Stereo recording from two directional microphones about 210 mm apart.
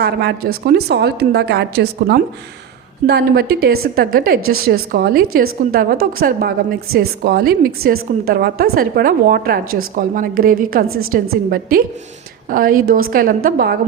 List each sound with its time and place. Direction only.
0.0 s a woman's voice: 50° right (ahead or behind)
10.8 s a woman's voice: 80° right
11.1 s a woman's voice: 45° right (ahead or behind)